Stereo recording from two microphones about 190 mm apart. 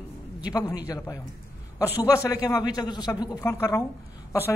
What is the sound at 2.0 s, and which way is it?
A man's voice, 15° left (ahead or behind).